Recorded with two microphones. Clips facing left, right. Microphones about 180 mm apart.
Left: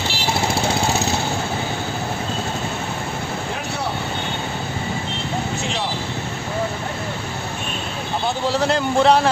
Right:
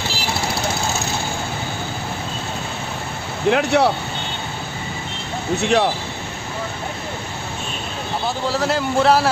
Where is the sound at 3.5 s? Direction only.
75° right (ahead or behind).